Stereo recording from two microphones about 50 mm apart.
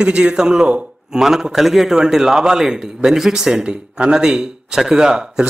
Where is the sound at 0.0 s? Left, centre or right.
Centre.